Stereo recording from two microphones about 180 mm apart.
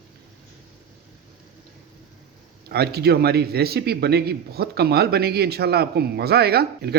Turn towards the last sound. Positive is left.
turn(degrees=-65)  # may be behind; listen again after turning